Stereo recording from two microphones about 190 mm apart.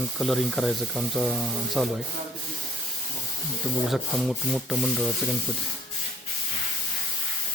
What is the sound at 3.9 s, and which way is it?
Speech, centre (ahead or behind).